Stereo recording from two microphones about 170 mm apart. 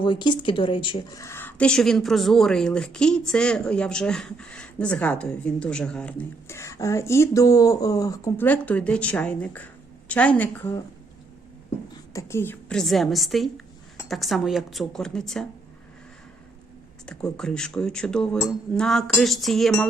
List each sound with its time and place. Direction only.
0.0 s speech: 30° left (ahead or behind)
1.2 s a woman's voice: 15° left (ahead or behind)
12.1 s speech: 15° left (ahead or behind)
17.1 s speech: 5° left (ahead or behind)